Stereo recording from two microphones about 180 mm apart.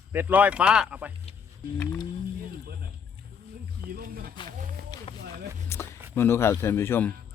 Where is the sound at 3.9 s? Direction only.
55° right (ahead or behind).